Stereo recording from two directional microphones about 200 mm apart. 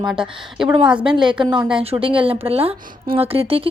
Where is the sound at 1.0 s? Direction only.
25° right (ahead or behind).